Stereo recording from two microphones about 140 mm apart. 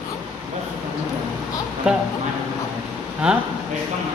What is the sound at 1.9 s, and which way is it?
Speech, 10° right (ahead or behind).